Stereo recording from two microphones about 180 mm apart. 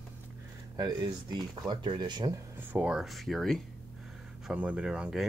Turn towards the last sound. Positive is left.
turn(degrees=-5)  # may be behind; listen again after turning